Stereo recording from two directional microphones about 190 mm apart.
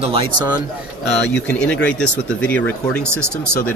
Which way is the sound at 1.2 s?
5° left (ahead or behind).